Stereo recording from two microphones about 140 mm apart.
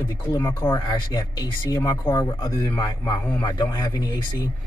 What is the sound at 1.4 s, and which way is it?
Speech, 25° left (ahead or behind).